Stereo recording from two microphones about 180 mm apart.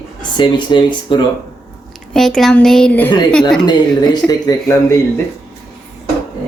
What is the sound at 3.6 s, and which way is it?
Speech, 25° left (ahead or behind).